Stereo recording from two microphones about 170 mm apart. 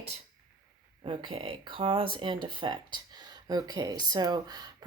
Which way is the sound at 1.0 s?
30° right (ahead or behind).